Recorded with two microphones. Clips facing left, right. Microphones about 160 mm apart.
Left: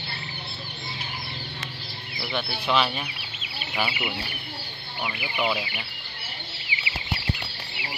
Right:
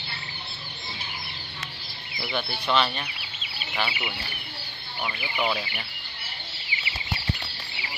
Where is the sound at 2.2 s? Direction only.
Centre (ahead or behind).